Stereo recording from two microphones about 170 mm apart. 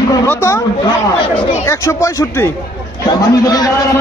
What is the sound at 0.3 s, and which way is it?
Speech, 15° left (ahead or behind).